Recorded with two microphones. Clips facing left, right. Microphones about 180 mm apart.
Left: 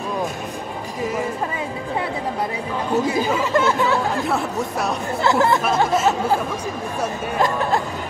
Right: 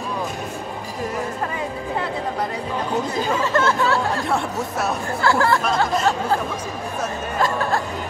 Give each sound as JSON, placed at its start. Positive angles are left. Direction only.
{"t": 2.9, "sound": "speech", "side_deg": 10}
{"t": 4.3, "sound": "speech", "side_deg": 0}
{"t": 5.2, "sound": "speech", "side_deg": 20}
{"t": 7.0, "sound": "speech", "side_deg": 15}